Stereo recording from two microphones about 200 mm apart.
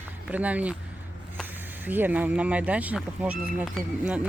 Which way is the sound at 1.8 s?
10° right (ahead or behind).